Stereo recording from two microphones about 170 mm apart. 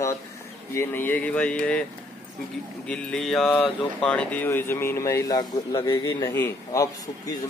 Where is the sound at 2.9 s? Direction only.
5° left (ahead or behind).